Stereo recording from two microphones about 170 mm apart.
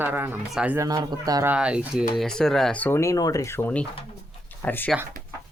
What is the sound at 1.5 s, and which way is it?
Speech, 5° right (ahead or behind).